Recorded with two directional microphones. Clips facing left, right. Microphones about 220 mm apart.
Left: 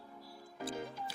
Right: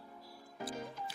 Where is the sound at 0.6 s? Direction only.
30° left (ahead or behind).